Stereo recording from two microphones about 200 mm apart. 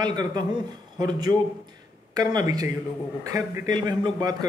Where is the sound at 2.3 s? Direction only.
20° right (ahead or behind).